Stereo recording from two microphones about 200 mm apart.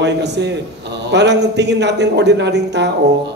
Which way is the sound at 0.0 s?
60° right (ahead or behind).